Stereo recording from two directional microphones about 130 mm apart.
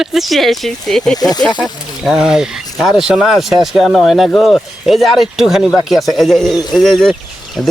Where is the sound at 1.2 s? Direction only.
30° left (ahead or behind).